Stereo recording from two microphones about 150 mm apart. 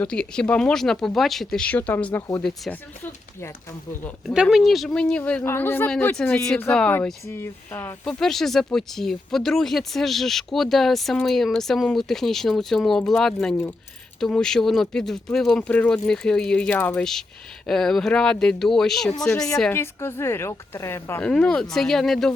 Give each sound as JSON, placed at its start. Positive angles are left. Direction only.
{"t": 0.0, "sound": "speech", "side_deg": 5}
{"t": 4.5, "sound": "speech", "side_deg": 0}
{"t": 8.0, "sound": "speech", "side_deg": 0}
{"t": 19.7, "sound": "speech", "side_deg": 15}
{"t": 21.2, "sound": "speech", "side_deg": 5}